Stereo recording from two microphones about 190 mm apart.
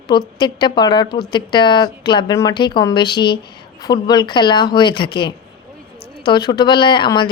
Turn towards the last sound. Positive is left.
turn(degrees=25)  # may be behind; listen again after turning